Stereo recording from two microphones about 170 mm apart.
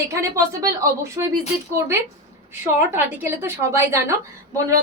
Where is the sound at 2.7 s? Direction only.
15° right (ahead or behind).